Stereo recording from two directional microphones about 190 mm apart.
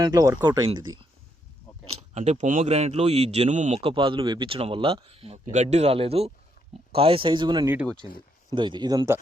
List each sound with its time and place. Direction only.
0.0 s speech: 20° right (ahead or behind)